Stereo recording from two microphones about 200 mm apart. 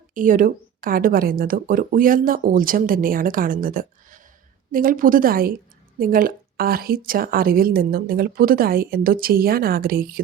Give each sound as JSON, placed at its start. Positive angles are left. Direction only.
{"t": 0.1, "sound": "a woman's voice", "side_deg": -40}